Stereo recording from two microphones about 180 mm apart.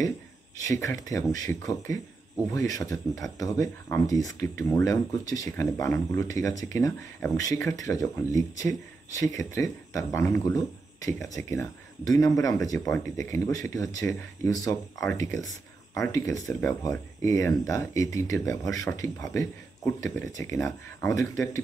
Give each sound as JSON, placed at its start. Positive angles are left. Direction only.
{"t": 0.7, "sound": "speech", "side_deg": 20}